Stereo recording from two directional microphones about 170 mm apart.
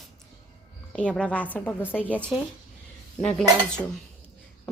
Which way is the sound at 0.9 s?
5° left (ahead or behind).